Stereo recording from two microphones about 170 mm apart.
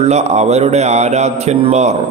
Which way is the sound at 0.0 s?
40° right (ahead or behind).